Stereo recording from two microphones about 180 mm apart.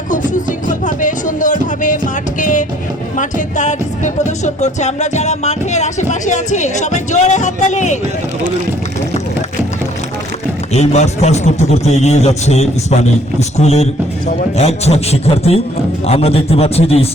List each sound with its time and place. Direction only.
0.7 s music: 45° left (ahead or behind)
10.7 s music: 40° left (ahead or behind)